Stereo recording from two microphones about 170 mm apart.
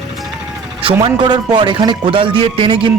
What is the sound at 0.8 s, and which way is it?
A man's voice, 30° right (ahead or behind).